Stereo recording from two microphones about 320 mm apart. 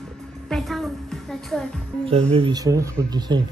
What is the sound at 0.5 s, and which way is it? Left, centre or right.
A woman's voice, centre.